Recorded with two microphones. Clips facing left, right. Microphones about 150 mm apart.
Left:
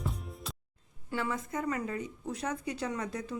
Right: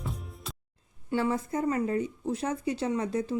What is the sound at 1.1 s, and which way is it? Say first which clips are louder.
Speech: right 6 dB; 30° right (ahead or behind).